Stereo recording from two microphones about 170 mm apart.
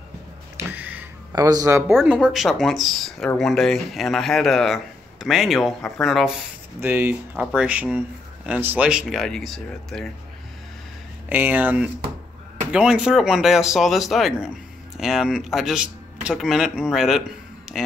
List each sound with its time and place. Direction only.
0.7 s a sound: 10° right (ahead or behind)
1.3 s speech: 20° right (ahead or behind)
1.9 s speech: centre (ahead or behind)
6.8 s speech: 10° right (ahead or behind)
11.2 s speech: 10° right (ahead or behind)
17.7 s a sound: 5° right (ahead or behind)